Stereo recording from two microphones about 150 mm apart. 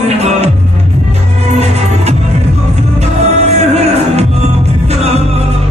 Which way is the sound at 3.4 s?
45° right (ahead or behind).